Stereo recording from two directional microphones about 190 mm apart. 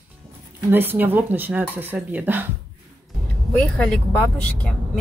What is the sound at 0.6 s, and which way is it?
Speech, 10° right (ahead or behind).